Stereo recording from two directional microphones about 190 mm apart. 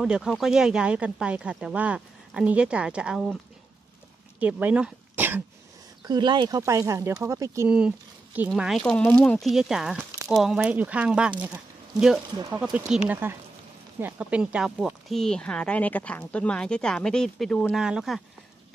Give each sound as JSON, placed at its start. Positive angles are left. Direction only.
{"t": 0.0, "sound": "speech", "side_deg": -5}
{"t": 4.4, "sound": "speech", "side_deg": -10}
{"t": 6.0, "sound": "speech", "side_deg": -25}